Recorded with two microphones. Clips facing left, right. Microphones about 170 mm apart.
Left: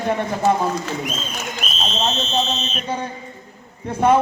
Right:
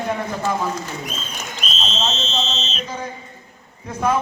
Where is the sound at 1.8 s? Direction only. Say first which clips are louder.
Left 3 dB; 55° left (ahead or behind).